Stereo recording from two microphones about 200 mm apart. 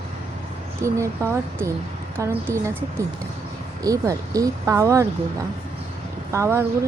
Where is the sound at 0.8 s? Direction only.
15° right (ahead or behind).